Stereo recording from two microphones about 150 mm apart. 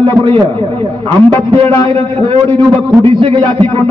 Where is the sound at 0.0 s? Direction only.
35° right (ahead or behind).